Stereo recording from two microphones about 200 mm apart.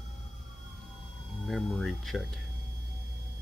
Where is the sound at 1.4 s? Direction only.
Centre (ahead or behind).